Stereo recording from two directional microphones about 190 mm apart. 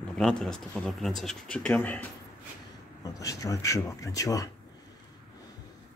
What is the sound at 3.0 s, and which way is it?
Speech, 20° left (ahead or behind).